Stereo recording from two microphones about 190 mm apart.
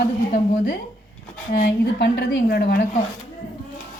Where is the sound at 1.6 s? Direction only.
60° left (ahead or behind).